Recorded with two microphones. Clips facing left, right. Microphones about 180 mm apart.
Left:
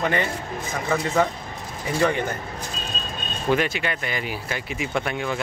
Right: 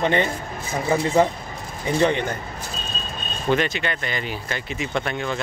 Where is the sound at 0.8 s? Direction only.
30° right (ahead or behind).